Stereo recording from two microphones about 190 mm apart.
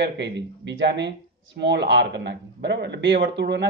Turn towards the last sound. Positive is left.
turn(degrees=-65)  # may be behind; listen again after turning